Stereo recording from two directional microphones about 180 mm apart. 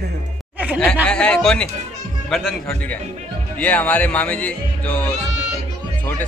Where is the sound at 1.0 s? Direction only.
5° left (ahead or behind).